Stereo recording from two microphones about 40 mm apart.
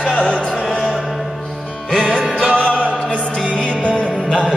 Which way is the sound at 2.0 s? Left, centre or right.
Centre.